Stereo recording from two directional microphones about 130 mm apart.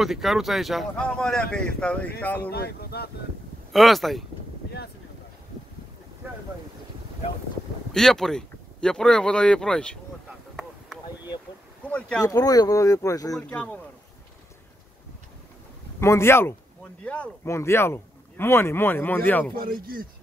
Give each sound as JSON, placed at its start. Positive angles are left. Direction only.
{"t": 0.0, "sound": "speech", "side_deg": 0}
{"t": 3.7, "sound": "speech", "side_deg": 0}
{"t": 7.9, "sound": "speech", "side_deg": 5}
{"t": 10.5, "sound": "a sound", "side_deg": -5}
{"t": 12.2, "sound": "speech", "side_deg": 30}
{"t": 13.4, "sound": "speech", "side_deg": 10}
{"t": 16.0, "sound": "speech", "side_deg": 20}
{"t": 17.5, "sound": "speech", "side_deg": 20}
{"t": 19.5, "sound": "speech", "side_deg": -90}